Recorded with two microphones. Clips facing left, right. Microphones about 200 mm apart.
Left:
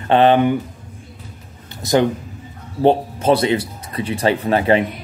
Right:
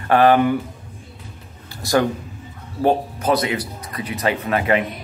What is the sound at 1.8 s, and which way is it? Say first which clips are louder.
A man's voice: left 3 dB; 20° left (ahead or behind).